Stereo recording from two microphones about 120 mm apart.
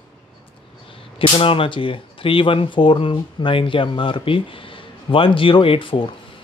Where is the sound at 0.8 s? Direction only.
50° left (ahead or behind).